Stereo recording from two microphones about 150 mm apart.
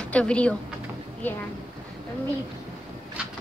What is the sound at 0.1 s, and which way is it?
A woman's voice, 10° left (ahead or behind).